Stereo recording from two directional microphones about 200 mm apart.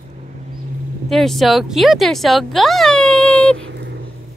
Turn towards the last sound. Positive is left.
turn(degrees=5)  # may be behind; listen again after turning